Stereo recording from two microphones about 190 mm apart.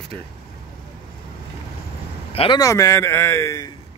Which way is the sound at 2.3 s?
25° left (ahead or behind).